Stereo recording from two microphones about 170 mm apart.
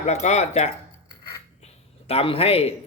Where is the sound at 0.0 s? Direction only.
40° left (ahead or behind).